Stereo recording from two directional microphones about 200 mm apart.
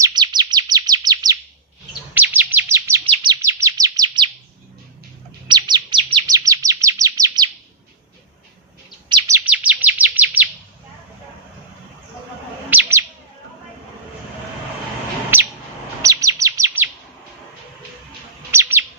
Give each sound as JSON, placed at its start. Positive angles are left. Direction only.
{"t": 0.0, "sound": "chirp", "side_deg": -20}
{"t": 2.1, "sound": "chirp", "side_deg": -10}
{"t": 5.5, "sound": "chirp", "side_deg": -20}
{"t": 9.0, "sound": "chirp", "side_deg": -20}
{"t": 12.7, "sound": "chirp", "side_deg": -15}
{"t": 15.3, "sound": "bird", "side_deg": -10}
{"t": 16.0, "sound": "chirp", "side_deg": -15}
{"t": 18.5, "sound": "chirp", "side_deg": -10}